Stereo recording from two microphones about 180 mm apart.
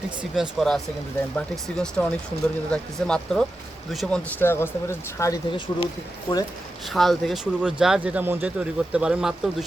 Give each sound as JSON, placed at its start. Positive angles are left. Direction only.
{"t": 0.2, "sound": "speech", "side_deg": 0}
{"t": 6.9, "sound": "speech", "side_deg": 0}